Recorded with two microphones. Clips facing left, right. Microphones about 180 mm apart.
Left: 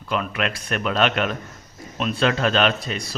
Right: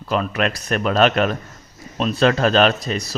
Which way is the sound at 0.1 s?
40° right (ahead or behind).